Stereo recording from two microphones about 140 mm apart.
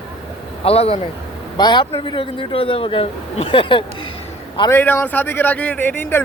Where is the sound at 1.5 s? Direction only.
30° left (ahead or behind).